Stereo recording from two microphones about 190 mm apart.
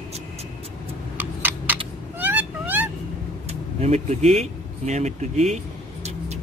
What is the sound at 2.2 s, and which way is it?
Vehicle, 10° right (ahead or behind).